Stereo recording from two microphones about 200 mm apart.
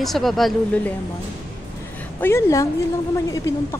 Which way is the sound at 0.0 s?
Centre (ahead or behind).